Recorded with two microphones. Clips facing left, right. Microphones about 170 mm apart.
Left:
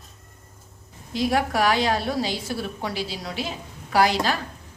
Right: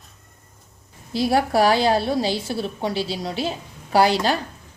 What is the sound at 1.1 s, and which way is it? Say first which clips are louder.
A woman's voice: right 4 dB; 35° right (ahead or behind).